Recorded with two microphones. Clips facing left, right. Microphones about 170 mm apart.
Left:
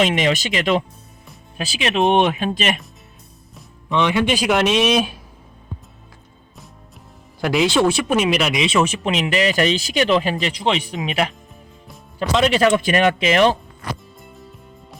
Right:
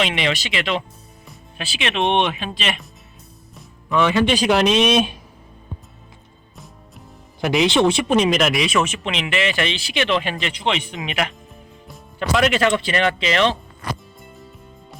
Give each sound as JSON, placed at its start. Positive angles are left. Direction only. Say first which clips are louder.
{"t": 0.0, "sound": "speech", "louder": "left 4 dB", "side_deg": 40}
{"t": 1.9, "sound": "speech", "louder": "left 4 dB", "side_deg": 5}
{"t": 2.1, "sound": "speech", "louder": "left 4 dB", "side_deg": 40}
{"t": 3.9, "sound": "speech", "louder": "right 1 dB", "side_deg": 15}
{"t": 7.7, "sound": "speech", "louder": "even", "side_deg": -20}
{"t": 8.1, "sound": "speech", "louder": "right 1 dB", "side_deg": 5}
{"t": 8.5, "sound": "speech", "louder": "left 2 dB", "side_deg": 25}
{"t": 14.2, "sound": "music", "louder": "even", "side_deg": 0}